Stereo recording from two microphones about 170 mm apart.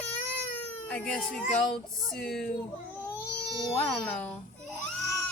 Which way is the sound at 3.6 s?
5° left (ahead or behind).